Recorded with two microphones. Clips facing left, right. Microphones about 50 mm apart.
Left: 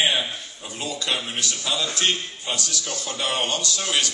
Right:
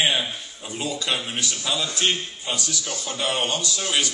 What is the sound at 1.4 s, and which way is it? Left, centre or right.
A man's voice, centre.